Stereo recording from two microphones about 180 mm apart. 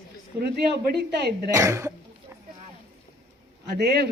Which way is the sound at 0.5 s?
65° right (ahead or behind).